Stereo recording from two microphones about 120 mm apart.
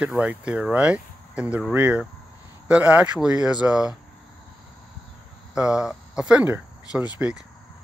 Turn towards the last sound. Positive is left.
turn(degrees=-10)  # may be behind; listen again after turning